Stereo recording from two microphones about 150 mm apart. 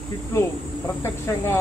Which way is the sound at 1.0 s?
15° left (ahead or behind).